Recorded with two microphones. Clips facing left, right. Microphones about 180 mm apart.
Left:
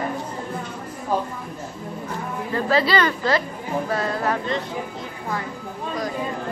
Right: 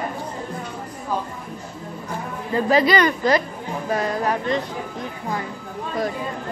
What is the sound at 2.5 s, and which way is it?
Speech, 15° right (ahead or behind).